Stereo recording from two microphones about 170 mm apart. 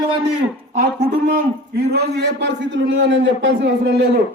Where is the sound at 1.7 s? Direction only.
70° right (ahead or behind).